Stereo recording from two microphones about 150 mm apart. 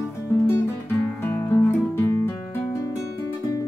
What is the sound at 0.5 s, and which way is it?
Guitar, 15° left (ahead or behind).